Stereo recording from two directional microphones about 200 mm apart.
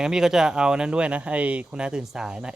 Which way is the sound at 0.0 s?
5° right (ahead or behind).